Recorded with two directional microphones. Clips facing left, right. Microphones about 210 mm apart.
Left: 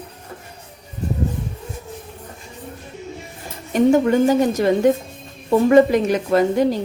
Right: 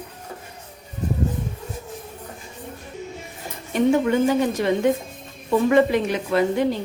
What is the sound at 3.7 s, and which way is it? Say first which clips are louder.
Speech: left 4 dB; 40° left (ahead or behind).